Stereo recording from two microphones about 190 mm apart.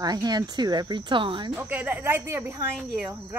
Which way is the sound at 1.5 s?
10° right (ahead or behind).